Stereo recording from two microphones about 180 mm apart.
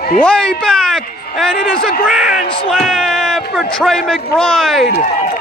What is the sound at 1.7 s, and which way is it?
Speech, 55° left (ahead or behind).